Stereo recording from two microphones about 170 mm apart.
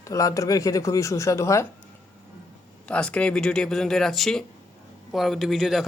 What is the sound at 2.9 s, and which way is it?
Speech, 5° left (ahead or behind).